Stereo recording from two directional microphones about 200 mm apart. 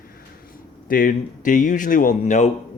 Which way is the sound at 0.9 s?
45° left (ahead or behind).